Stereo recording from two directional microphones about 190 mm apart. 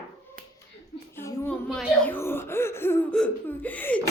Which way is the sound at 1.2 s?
10° left (ahead or behind).